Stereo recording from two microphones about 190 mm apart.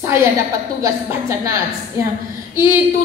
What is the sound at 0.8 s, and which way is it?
Speech, 15° right (ahead or behind).